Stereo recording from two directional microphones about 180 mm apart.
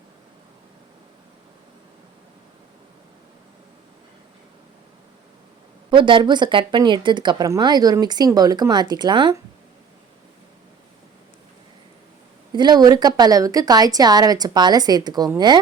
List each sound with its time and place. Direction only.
5.9 s speech: 25° right (ahead or behind)
12.5 s speech: 25° right (ahead or behind)